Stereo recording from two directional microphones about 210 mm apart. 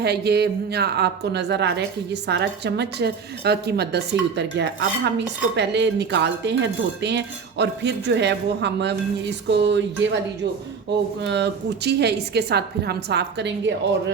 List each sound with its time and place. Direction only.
0.0 s a woman's voice: 50° right (ahead or behind)
11.3 s a woman's voice: 55° right (ahead or behind)